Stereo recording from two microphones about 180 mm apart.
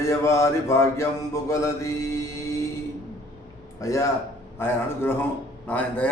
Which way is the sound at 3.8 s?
15° left (ahead or behind).